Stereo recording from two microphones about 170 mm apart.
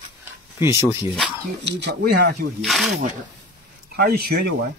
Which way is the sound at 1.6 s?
80° right.